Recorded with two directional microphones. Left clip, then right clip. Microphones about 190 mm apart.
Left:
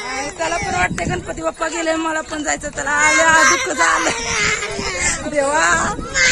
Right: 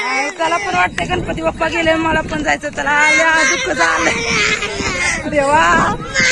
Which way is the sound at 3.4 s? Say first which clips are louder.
Even; 35° left (ahead or behind).